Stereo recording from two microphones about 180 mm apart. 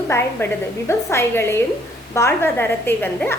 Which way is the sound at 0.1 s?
15° left (ahead or behind).